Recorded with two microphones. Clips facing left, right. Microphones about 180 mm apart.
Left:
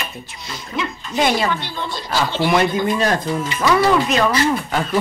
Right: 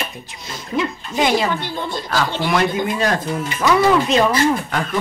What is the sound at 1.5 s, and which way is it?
Speech, 50° right (ahead or behind).